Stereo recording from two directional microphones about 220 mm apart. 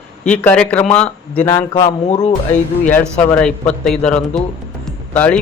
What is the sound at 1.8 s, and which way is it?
Speech, 30° left (ahead or behind).